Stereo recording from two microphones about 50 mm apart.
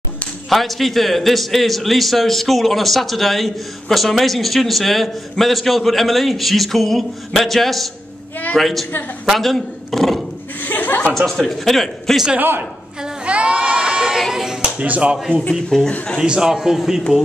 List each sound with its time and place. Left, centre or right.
0.5 s a man's voice: centre
10.6 s chuckle: left
11.1 s a man's voice: centre
12.4 s a man's voice: right
13.2 s crowd: right
14.3 s a sound: centre
14.9 s speech: right
15.7 s a man's voice: centre
16.2 s a man's voice: centre